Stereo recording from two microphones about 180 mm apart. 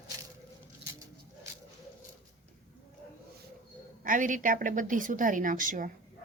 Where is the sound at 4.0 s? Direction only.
45° right (ahead or behind).